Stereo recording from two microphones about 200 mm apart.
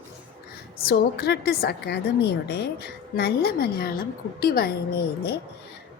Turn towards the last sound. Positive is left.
turn(degrees=50)  # may be behind; listen again after turning